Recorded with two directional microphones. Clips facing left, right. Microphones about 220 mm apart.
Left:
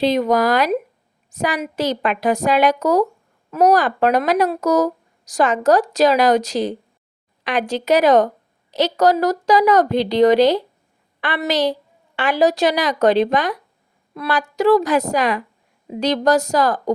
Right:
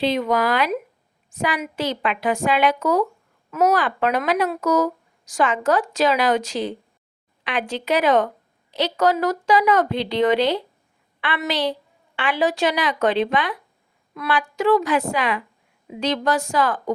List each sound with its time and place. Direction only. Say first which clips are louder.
0.0 s speech: left 4 dB; 40° left (ahead or behind)